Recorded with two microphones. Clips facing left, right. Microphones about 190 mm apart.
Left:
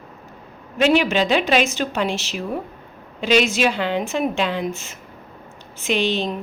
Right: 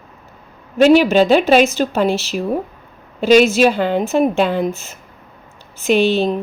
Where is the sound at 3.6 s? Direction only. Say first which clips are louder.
Right 6 dB; 40° right (ahead or behind).